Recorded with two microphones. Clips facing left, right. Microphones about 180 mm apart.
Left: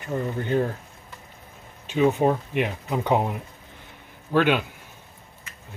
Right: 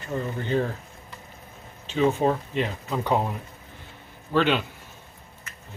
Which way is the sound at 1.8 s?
10° left (ahead or behind).